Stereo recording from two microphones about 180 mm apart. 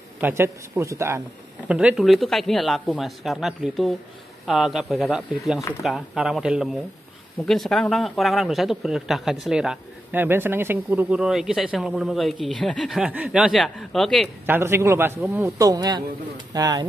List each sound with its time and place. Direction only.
0.2 s a man's voice: 15° right (ahead or behind); by 14.3 s centre (ahead or behind)
14.4 s a man's voice: 15° right (ahead or behind)